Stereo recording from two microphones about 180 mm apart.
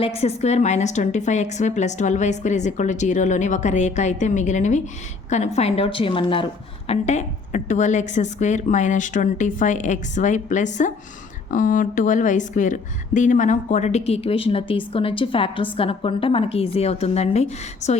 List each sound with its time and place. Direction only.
0.0 s a woman's voice: 35° left (ahead or behind)